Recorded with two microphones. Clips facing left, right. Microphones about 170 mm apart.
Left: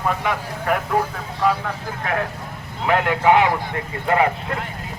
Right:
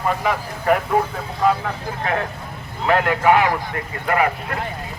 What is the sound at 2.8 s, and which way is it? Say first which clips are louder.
Speech: right 1 dB; 20° left (ahead or behind).